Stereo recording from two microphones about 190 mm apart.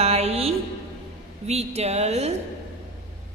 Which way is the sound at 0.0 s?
35° right (ahead or behind).